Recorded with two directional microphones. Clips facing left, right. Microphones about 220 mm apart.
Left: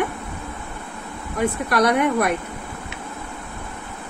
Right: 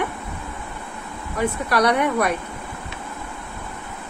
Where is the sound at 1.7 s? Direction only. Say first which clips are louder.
Left 1 dB; 50° left (ahead or behind).